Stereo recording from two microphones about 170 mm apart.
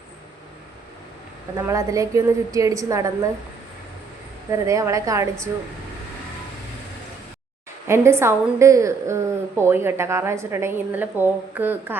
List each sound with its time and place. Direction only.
1.5 s a woman's voice: 20° right (ahead or behind)
4.5 s a woman's voice: 20° right (ahead or behind)
7.9 s a woman's voice: 15° right (ahead or behind)